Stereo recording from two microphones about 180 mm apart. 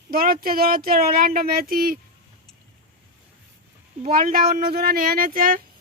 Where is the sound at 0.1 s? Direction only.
55° right (ahead or behind).